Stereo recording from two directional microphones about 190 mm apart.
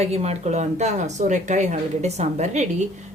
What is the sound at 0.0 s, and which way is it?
Speech, 35° right (ahead or behind).